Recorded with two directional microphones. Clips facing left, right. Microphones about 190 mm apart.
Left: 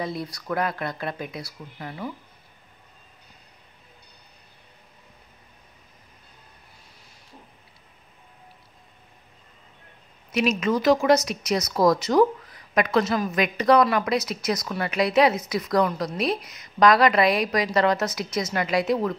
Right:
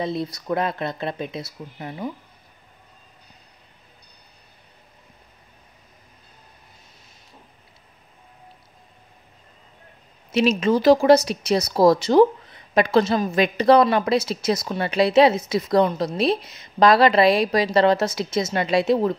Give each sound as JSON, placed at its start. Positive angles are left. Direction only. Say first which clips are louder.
{"t": 0.0, "sound": "speech", "louder": "right 4 dB", "side_deg": -25}
{"t": 10.3, "sound": "speech", "louder": "right 4 dB", "side_deg": -30}